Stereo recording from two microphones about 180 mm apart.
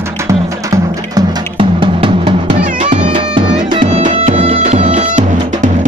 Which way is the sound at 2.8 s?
30° right (ahead or behind).